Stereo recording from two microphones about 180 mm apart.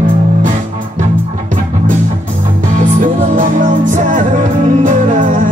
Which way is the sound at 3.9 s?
45° right (ahead or behind).